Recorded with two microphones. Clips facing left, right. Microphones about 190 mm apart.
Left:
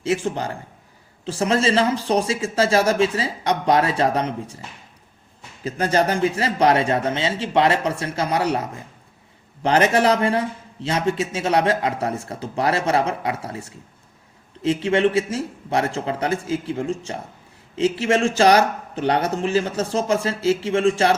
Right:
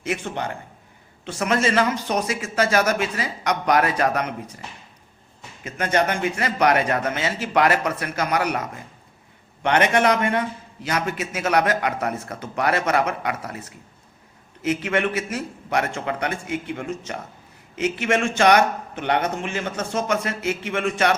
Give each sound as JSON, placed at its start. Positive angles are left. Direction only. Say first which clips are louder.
{"t": 0.0, "sound": "a man's voice", "louder": "left 4 dB", "side_deg": 30}
{"t": 5.6, "sound": "a man's voice", "louder": "left 2 dB", "side_deg": 35}